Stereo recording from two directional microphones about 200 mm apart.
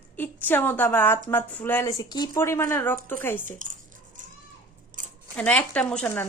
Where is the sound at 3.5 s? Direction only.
40° right (ahead or behind).